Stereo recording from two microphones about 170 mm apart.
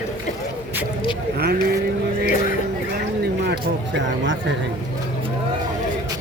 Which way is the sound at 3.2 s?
70° right (ahead or behind).